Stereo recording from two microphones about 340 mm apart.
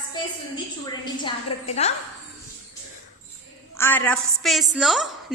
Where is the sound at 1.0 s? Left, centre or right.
Centre.